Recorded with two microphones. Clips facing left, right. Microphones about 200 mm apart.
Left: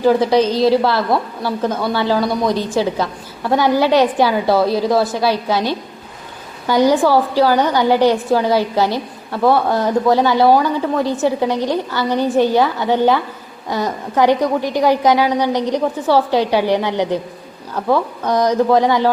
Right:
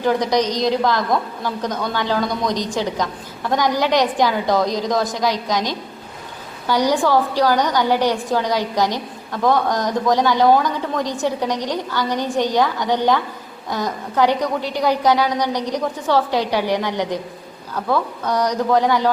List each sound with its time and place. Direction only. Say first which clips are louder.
0.0 s a woman's voice: left 5 dB; 10° left (ahead or behind)
0.3 s a woman's voice: left 5 dB; 15° right (ahead or behind)
0.8 s a woman's voice: left 2 dB; 10° left (ahead or behind)
15.5 s a woman's voice: left 5 dB; 10° right (ahead or behind)
15.8 s a woman's voice: left 4 dB; 10° left (ahead or behind)
17.8 s a woman's voice: left 4 dB; 10° left (ahead or behind)